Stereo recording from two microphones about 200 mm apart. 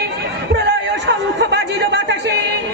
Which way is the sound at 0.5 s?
60° right (ahead or behind).